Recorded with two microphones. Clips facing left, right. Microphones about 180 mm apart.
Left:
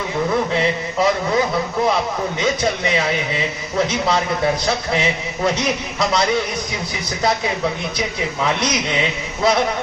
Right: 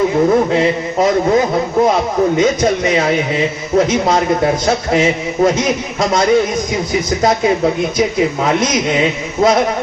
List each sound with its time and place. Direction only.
0.3 s a man's voice: 45° right (ahead or behind)